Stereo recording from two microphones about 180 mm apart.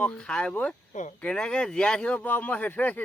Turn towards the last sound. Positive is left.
turn(degrees=10)  # may be behind; listen again after turning